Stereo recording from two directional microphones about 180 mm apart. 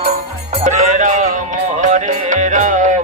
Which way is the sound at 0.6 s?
40° right (ahead or behind).